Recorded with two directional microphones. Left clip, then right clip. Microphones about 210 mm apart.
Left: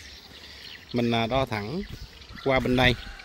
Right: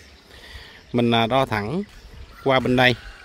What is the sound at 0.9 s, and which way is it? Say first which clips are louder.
Speech: right 6 dB; 20° right (ahead or behind).